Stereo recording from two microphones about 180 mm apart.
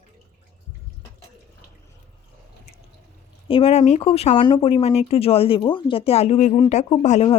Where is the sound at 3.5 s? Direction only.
35° left (ahead or behind).